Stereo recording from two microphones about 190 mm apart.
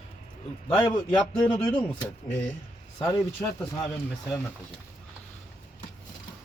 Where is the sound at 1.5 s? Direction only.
10° left (ahead or behind).